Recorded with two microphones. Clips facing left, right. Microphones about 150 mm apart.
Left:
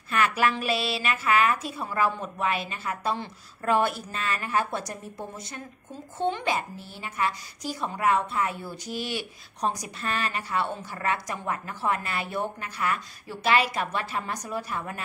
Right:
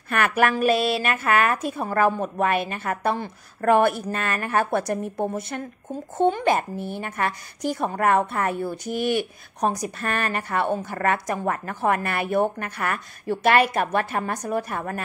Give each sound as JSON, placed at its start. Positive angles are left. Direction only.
{"t": 0.1, "sound": "a woman's voice", "side_deg": -55}